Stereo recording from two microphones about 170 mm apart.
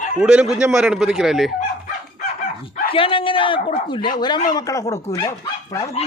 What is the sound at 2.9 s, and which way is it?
A man's voice, 30° left (ahead or behind).